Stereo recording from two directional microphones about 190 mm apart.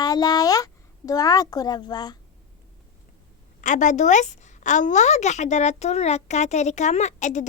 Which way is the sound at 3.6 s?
40° left (ahead or behind).